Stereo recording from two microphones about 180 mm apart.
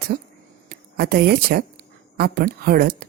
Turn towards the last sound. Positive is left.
turn(degrees=-55)  # may be behind; listen again after turning